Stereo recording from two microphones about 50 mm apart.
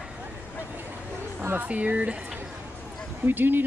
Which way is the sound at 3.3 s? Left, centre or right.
Right.